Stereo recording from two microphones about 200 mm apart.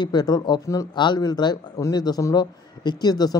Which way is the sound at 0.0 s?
20° left (ahead or behind).